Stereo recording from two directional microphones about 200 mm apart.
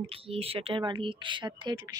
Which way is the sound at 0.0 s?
30° right (ahead or behind).